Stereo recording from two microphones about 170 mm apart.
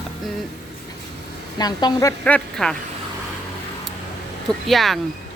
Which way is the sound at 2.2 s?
5° left (ahead or behind).